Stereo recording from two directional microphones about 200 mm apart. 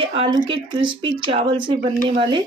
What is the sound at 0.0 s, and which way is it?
Speech, 25° right (ahead or behind).